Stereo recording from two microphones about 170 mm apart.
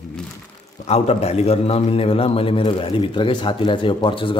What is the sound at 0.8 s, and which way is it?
A man's voice, 40° left (ahead or behind).